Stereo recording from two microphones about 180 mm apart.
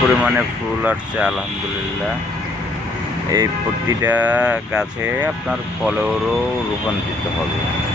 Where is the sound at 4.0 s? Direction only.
10° right (ahead or behind).